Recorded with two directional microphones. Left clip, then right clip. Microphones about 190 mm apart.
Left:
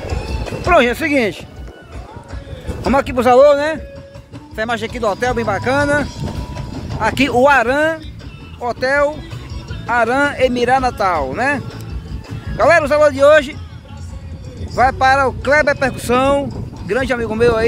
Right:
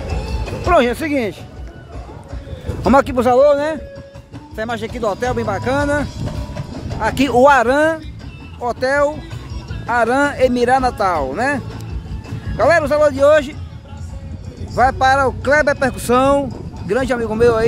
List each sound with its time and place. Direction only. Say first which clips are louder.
0.3 s music: left 1 dB; 15° right (ahead or behind)
2.9 s speech: right 3 dB; 30° right (ahead or behind)
3.2 s a man's voice: left 2 dB; 5° right (ahead or behind)
7.0 s a man's voice: even; 15° right (ahead or behind)
14.8 s speech: left 1 dB; 15° right (ahead or behind)